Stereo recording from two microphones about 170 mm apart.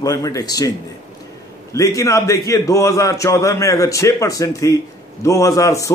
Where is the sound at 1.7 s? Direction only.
20° left (ahead or behind).